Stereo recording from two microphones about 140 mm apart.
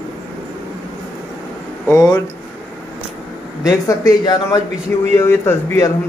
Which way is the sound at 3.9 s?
25° left (ahead or behind).